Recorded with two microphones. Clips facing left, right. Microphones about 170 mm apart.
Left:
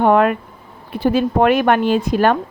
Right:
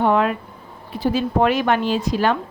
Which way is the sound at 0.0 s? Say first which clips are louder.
Left 4 dB; 55° left (ahead or behind).